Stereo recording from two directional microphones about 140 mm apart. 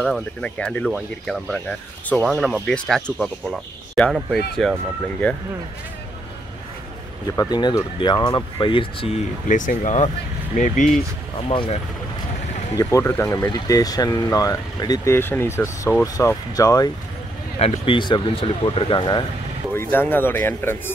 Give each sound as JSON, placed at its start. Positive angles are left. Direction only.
{"t": 0.0, "sound": "speech", "side_deg": 5}
{"t": 7.2, "sound": "speech", "side_deg": 30}
{"t": 9.5, "sound": "speech", "side_deg": 65}
{"t": 11.3, "sound": "speech", "side_deg": 40}
{"t": 12.7, "sound": "speech", "side_deg": 20}
{"t": 17.6, "sound": "speech", "side_deg": 45}
{"t": 19.7, "sound": "speech", "side_deg": 15}